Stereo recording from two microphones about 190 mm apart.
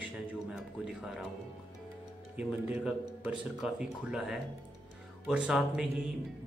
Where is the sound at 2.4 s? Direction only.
5° right (ahead or behind).